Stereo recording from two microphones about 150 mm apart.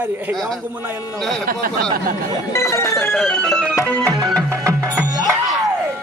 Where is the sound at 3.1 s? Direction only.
5° left (ahead or behind).